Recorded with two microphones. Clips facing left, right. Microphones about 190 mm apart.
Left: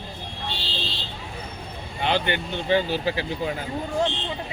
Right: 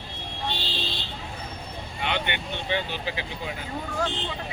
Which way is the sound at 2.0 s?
35° left (ahead or behind).